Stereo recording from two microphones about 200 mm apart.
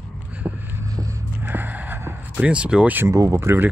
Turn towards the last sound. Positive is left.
turn(degrees=-10)  # may be behind; listen again after turning